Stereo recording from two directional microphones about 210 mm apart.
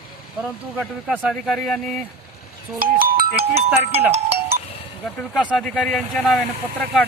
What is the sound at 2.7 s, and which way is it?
Music, 45° right (ahead or behind).